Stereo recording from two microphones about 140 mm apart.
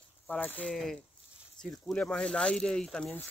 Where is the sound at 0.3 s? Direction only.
10° left (ahead or behind).